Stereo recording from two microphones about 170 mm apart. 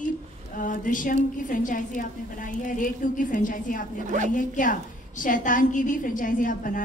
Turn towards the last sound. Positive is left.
turn(degrees=50)  # may be behind; listen again after turning